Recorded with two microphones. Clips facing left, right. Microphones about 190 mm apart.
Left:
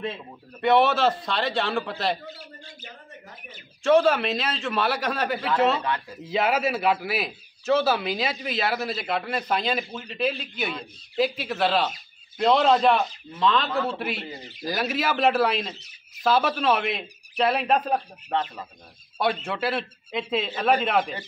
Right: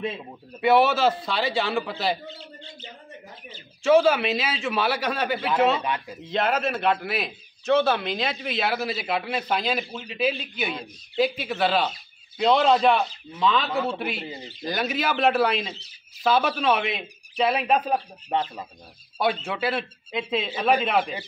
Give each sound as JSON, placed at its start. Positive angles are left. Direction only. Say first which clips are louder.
{"t": 0.6, "sound": "a man's voice", "louder": "right 1 dB", "side_deg": -5}
{"t": 2.2, "sound": "speech", "louder": "right 1 dB", "side_deg": -25}
{"t": 3.8, "sound": "a man's voice", "louder": "right 1 dB", "side_deg": 0}
{"t": 5.9, "sound": "speech", "louder": "even", "side_deg": -20}
{"t": 6.2, "sound": "a man's voice", "louder": "left 1 dB", "side_deg": 5}
{"t": 14.2, "sound": "speech", "louder": "right 2 dB", "side_deg": -25}
{"t": 14.6, "sound": "a man's voice", "louder": "even", "side_deg": 0}
{"t": 18.3, "sound": "speech", "louder": "right 1 dB", "side_deg": -15}
{"t": 19.4, "sound": "a man's voice", "louder": "even", "side_deg": 0}